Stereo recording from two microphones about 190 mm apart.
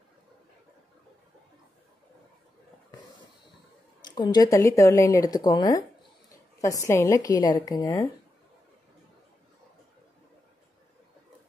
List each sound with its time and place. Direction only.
4.0 s a woman's voice: 20° left (ahead or behind)